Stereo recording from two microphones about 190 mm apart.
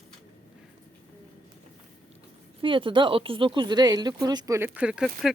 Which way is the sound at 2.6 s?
25° right (ahead or behind).